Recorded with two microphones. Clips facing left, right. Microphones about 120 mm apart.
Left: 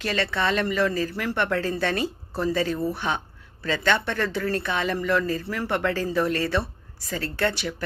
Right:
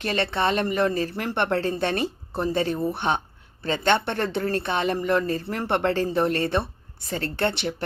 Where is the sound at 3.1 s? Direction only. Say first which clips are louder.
Right 3 dB; 25° right (ahead or behind).